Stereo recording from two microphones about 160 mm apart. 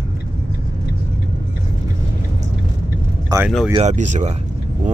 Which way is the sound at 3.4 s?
10° right (ahead or behind).